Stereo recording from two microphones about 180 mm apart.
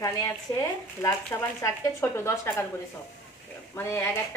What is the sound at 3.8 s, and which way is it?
Speech, 15° left (ahead or behind).